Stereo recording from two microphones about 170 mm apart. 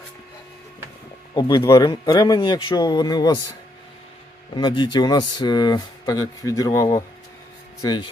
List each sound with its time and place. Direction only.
1.4 s speech: 25° left (ahead or behind)
4.5 s speech: 25° left (ahead or behind)